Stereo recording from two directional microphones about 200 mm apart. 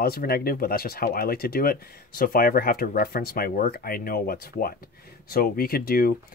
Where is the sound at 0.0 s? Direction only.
50° left (ahead or behind).